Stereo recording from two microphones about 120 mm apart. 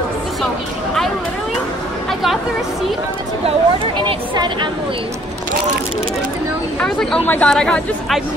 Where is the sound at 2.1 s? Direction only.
Centre (ahead or behind).